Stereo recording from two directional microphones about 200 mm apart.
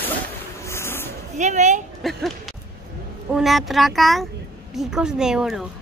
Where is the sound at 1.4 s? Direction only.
35° right (ahead or behind).